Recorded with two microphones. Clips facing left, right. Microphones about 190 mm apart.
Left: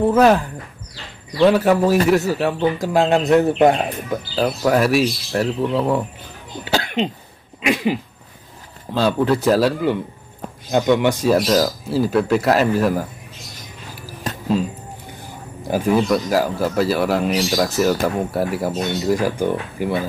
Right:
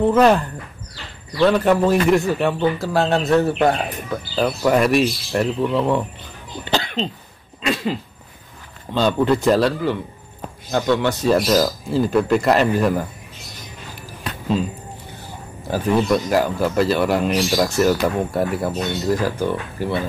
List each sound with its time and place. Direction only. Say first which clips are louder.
0.0 s speech: even; 5° left (ahead or behind)
2.8 s speech: left 2 dB; 15° left (ahead or behind)
4.6 s speech: even; 5° left (ahead or behind)
6.6 s cough: left 2 dB; 10° left (ahead or behind)
7.6 s speech: left 3 dB; 15° left (ahead or behind)
8.9 s speech: even; 5° left (ahead or behind)
16.0 s speech: even; 5° left (ahead or behind)